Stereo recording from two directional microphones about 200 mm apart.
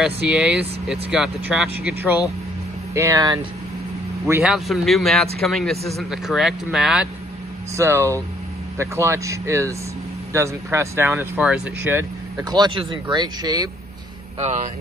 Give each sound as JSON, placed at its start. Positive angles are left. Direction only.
{"t": 0.0, "sound": "speech", "side_deg": -5}
{"t": 4.3, "sound": "speech", "side_deg": -5}
{"t": 7.7, "sound": "speech", "side_deg": -15}